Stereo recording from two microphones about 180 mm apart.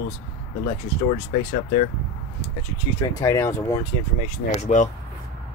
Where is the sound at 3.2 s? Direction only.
15° left (ahead or behind).